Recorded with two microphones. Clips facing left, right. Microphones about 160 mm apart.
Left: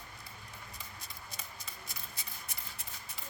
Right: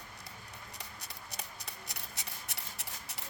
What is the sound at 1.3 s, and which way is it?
Scissors, 70° right (ahead or behind).